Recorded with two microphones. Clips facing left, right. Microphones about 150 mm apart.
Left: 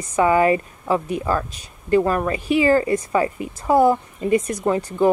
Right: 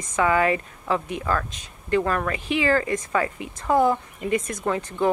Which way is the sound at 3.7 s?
10° left (ahead or behind).